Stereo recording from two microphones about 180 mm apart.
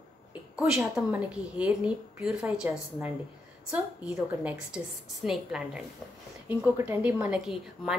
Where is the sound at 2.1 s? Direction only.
5° right (ahead or behind).